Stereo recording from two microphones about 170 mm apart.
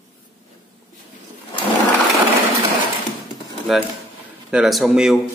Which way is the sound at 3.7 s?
Centre (ahead or behind).